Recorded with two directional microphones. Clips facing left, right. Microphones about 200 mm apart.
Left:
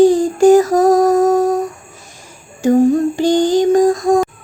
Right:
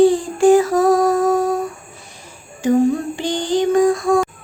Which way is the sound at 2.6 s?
45° left (ahead or behind).